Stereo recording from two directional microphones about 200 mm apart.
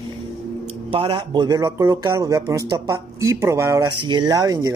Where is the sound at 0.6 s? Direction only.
30° right (ahead or behind).